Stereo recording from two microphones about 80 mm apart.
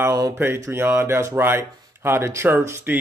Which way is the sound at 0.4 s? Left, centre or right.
Right.